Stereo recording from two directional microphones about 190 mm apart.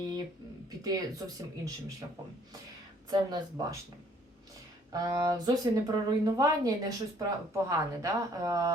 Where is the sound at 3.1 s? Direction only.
20° right (ahead or behind).